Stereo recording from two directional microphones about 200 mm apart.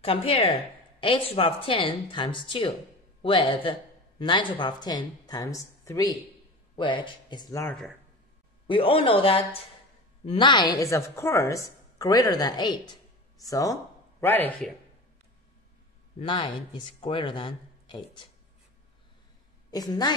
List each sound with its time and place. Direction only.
0.0 s a woman's voice: 30° left (ahead or behind); by 14.7 s 10° left (ahead or behind)
16.2 s a woman's voice: 25° left (ahead or behind)
19.7 s a woman's voice: 20° left (ahead or behind)